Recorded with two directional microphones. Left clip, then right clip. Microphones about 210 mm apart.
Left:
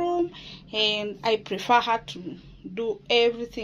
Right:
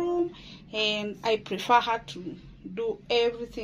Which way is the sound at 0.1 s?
30° left (ahead or behind).